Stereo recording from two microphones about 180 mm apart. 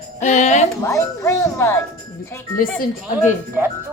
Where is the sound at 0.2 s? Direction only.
40° left (ahead or behind).